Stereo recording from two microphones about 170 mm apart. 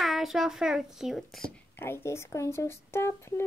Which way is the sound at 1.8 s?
15° left (ahead or behind).